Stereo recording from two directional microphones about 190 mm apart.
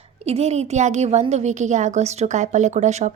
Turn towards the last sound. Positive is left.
turn(degrees=-40)  # may be behind; listen again after turning